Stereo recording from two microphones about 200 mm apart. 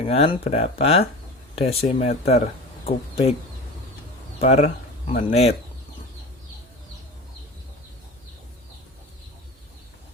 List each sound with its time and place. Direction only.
0.0 s speech: 30° left (ahead or behind)
4.4 s speech: 35° left (ahead or behind)